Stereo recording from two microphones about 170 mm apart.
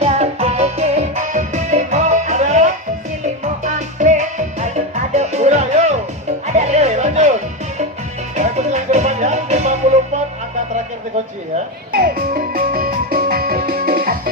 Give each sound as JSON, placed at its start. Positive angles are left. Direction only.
{"t": 0.0, "sound": "music", "side_deg": -40}
{"t": 8.4, "sound": "music", "side_deg": -40}
{"t": 11.9, "sound": "music", "side_deg": -60}